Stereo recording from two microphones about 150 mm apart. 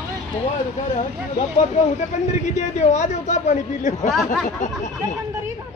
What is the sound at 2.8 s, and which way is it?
A man's voice, 50° left (ahead or behind).